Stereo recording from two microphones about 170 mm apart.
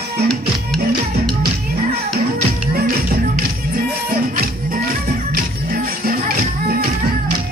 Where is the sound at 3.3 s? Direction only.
60° right (ahead or behind).